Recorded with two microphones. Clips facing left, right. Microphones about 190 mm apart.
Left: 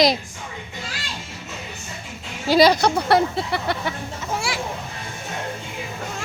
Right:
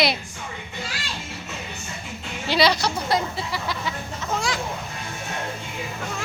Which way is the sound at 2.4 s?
45° left (ahead or behind).